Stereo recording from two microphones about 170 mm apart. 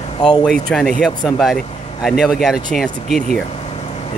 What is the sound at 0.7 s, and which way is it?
Speech, 5° left (ahead or behind).